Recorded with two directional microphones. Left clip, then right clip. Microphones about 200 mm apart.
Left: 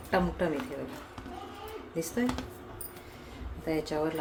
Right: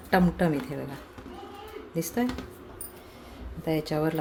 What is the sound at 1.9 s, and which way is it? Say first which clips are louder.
Speech: right 3 dB; 30° right (ahead or behind).